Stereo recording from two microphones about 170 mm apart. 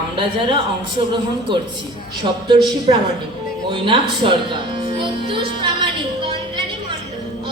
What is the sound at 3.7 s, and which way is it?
Music, 30° right (ahead or behind).